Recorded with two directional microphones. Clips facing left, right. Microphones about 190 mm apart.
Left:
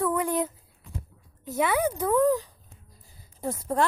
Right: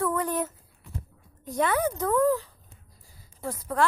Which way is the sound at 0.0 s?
15° left (ahead or behind).